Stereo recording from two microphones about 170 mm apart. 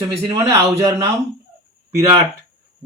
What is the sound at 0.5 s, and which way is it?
Speech, 15° right (ahead or behind).